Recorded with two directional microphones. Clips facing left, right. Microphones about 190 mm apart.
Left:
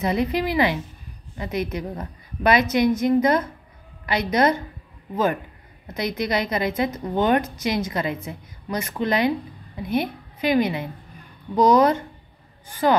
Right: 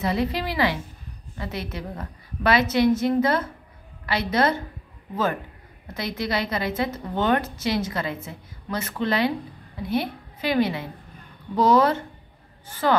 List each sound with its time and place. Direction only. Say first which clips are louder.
0.0 s a woman's voice: left 3 dB; 20° left (ahead or behind)